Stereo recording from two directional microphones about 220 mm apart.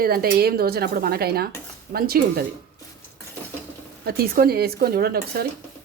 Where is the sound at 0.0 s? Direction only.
40° right (ahead or behind).